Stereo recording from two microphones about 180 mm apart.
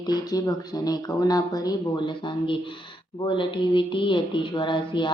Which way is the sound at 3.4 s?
25° left (ahead or behind).